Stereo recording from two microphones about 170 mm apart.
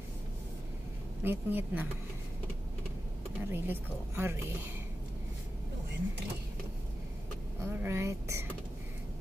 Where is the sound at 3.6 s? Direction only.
15° right (ahead or behind).